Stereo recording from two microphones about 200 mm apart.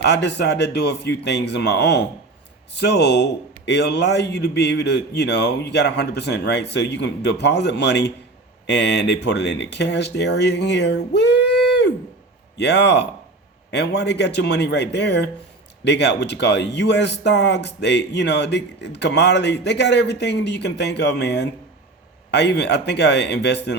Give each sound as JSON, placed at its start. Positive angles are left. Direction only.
{"t": 0.0, "sound": "a man's voice", "side_deg": 60}